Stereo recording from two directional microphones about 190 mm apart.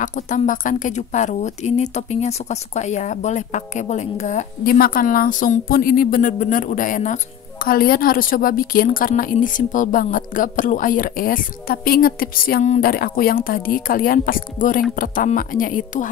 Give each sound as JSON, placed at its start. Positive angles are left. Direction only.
{"t": 0.0, "sound": "speech", "side_deg": 40}